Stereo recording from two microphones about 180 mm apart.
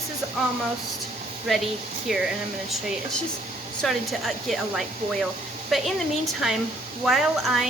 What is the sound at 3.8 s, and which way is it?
A woman's voice, centre (ahead or behind).